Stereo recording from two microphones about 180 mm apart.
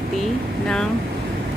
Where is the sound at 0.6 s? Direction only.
5° left (ahead or behind).